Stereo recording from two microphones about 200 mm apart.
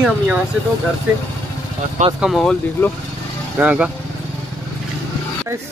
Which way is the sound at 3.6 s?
5° right (ahead or behind).